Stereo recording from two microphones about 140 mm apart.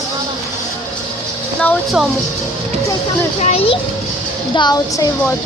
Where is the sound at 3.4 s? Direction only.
45° left (ahead or behind).